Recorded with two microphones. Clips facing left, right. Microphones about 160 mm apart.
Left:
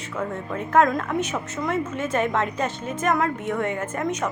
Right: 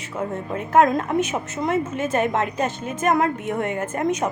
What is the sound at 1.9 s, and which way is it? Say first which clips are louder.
Speech: right 2 dB; 45° right (ahead or behind).